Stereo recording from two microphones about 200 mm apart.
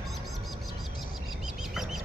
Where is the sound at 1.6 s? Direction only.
Centre (ahead or behind).